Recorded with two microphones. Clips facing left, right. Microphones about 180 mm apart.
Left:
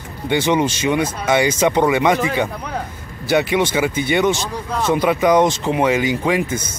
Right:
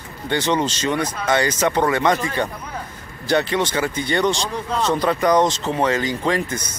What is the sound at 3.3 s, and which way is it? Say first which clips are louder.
Speech: left 3 dB; 10° left (ahead or behind).